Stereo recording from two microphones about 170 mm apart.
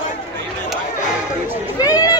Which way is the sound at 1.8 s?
20° left (ahead or behind).